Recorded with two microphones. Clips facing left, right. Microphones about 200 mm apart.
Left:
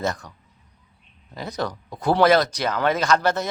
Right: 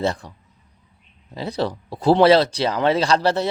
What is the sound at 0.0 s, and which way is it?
Speech, 30° right (ahead or behind).